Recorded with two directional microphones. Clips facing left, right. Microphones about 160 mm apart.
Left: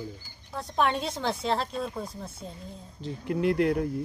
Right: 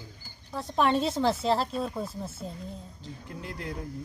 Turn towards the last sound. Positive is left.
turn(degrees=70)  # may be behind; listen again after turning